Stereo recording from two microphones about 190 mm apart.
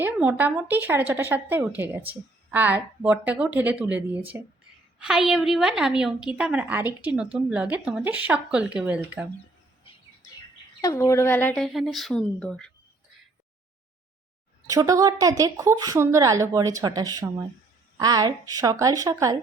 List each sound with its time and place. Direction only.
0.0 s a woman's voice: 10° right (ahead or behind)
10.8 s a woman's voice: 15° left (ahead or behind)
14.7 s a woman's voice: 20° right (ahead or behind)